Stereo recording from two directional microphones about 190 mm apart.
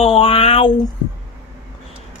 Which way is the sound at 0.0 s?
30° left (ahead or behind).